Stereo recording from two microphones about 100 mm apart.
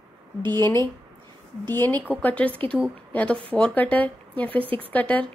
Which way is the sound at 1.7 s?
20° left (ahead or behind).